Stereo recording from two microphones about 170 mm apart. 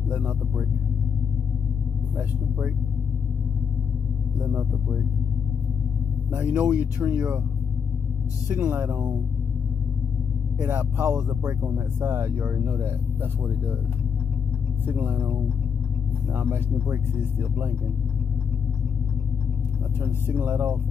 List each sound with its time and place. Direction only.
0.1 s speech: 10° right (ahead or behind)
4.4 s speech: 10° right (ahead or behind)
6.3 s speech: 10° right (ahead or behind)
8.5 s speech: 10° right (ahead or behind)
10.6 s speech: 10° right (ahead or behind)
14.9 s speech: 15° right (ahead or behind)
16.3 s speech: 10° right (ahead or behind)
20.2 s speech: 15° right (ahead or behind)